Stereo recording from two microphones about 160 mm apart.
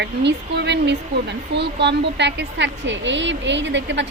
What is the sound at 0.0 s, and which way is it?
A woman's voice, 90° right.